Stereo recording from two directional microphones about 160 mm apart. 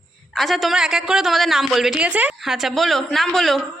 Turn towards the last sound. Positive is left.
turn(degrees=0)  # may be behind; listen again after turning